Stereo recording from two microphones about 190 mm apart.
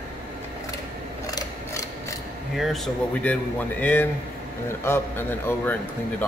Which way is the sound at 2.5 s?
Centre (ahead or behind).